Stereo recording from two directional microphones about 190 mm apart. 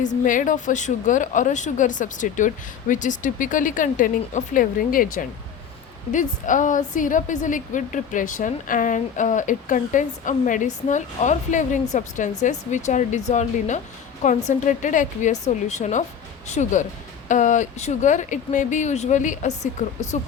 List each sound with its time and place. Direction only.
0.0 s a woman's voice: 40° left (ahead or behind)